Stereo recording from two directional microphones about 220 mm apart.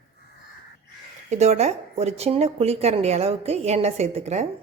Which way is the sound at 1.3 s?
30° right (ahead or behind).